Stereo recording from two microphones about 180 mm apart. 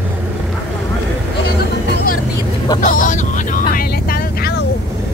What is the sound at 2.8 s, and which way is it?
Vehicle, 45° left (ahead or behind).